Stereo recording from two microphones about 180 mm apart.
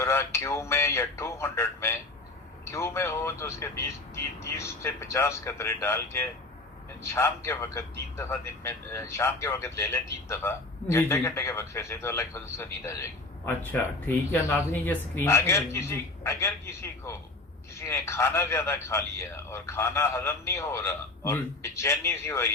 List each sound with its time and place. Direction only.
0.0 s a man's voice: 15° left (ahead or behind)